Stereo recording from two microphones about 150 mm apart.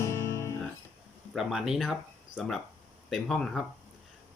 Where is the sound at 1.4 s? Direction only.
5° right (ahead or behind).